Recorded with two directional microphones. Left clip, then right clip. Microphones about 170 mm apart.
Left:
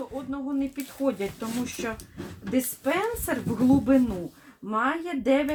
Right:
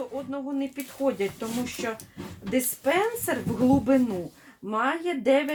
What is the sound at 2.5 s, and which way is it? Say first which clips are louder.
Speech: right 2 dB; 25° right (ahead or behind).